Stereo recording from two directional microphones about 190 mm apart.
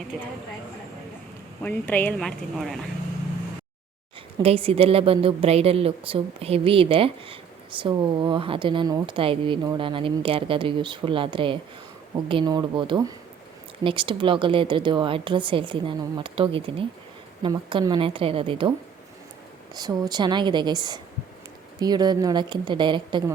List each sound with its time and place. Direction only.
1.6 s speech: 10° left (ahead or behind)
4.4 s speech: 30° right (ahead or behind)
19.7 s speech: 20° right (ahead or behind)